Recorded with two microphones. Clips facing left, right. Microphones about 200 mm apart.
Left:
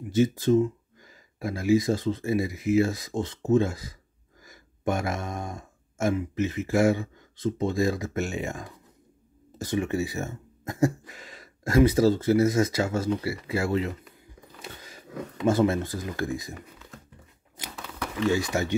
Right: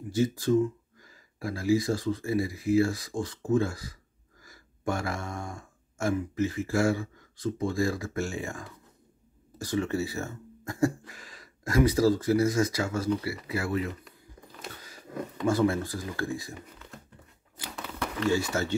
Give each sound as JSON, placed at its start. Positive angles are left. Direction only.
{"t": 0.1, "sound": "speech", "side_deg": 20}
{"t": 15.0, "sound": "speech", "side_deg": 0}
{"t": 15.4, "sound": "speech", "side_deg": 20}
{"t": 17.7, "sound": "a sound", "side_deg": 5}
{"t": 18.3, "sound": "speech", "side_deg": 15}